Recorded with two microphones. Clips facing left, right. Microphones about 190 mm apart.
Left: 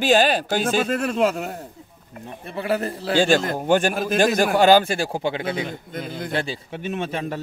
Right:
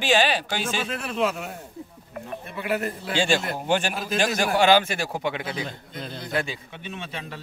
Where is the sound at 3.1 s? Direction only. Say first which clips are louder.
Left 6 dB; 45° left (ahead or behind).